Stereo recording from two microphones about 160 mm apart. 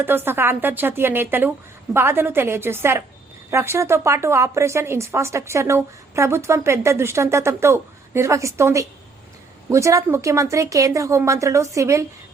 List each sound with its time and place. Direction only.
0.0 s a woman's voice: 15° right (ahead or behind)